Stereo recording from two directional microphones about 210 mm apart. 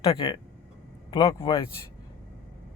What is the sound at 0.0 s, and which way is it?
Speech, 25° left (ahead or behind).